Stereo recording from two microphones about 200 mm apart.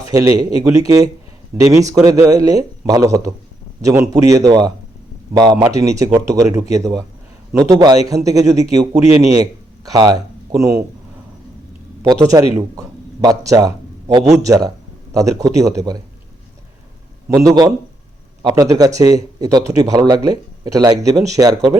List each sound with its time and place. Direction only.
0.0 s a man's voice: 15° right (ahead or behind)
12.3 s a man's voice: 15° right (ahead or behind)
17.2 s speech: 15° right (ahead or behind)